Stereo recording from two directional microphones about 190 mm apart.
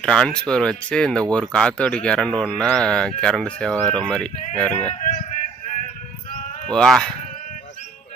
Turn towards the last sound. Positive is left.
turn(degrees=0)  # may be behind; listen again after turning